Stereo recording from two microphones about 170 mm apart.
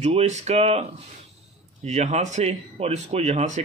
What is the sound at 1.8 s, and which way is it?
Speech, 40° right (ahead or behind).